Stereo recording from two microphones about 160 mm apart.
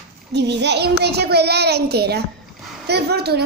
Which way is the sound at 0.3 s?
90° right.